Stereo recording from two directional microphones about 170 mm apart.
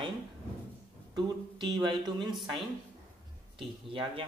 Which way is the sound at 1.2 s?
25° right (ahead or behind).